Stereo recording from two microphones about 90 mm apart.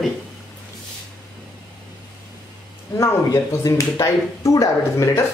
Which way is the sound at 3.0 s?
35° left (ahead or behind).